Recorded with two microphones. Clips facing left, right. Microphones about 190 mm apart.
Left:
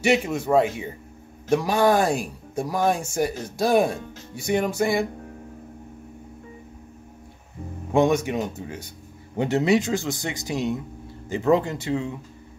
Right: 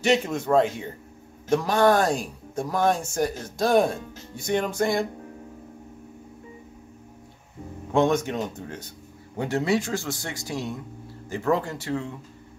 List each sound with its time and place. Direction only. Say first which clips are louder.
0.0 s speech: left 1 dB; 10° left (ahead or behind)
7.9 s speech: left 2 dB; 10° left (ahead or behind)
9.4 s a man's voice: left 4 dB; 20° left (ahead or behind)